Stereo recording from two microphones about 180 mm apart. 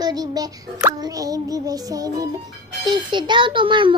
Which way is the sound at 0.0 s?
20° right (ahead or behind).